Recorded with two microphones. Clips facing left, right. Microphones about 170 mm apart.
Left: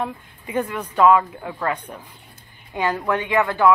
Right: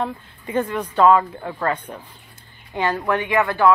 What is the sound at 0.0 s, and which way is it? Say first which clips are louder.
A woman's voice: right 2 dB; 10° left (ahead or behind).